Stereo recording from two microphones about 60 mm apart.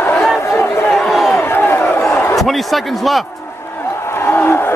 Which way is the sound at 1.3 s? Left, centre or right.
Left.